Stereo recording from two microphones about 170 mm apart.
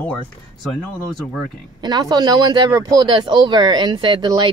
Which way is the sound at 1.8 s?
25° right (ahead or behind).